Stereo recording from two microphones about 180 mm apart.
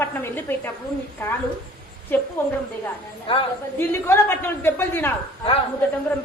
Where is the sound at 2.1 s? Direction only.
10° left (ahead or behind).